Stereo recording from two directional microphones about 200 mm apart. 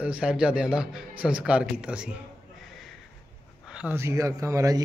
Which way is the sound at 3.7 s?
5° right (ahead or behind).